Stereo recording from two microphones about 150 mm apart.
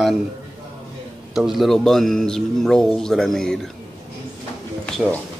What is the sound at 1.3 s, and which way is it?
Speech, 5° right (ahead or behind).